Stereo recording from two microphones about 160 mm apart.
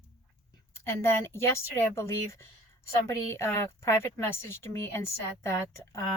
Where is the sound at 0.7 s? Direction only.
15° left (ahead or behind).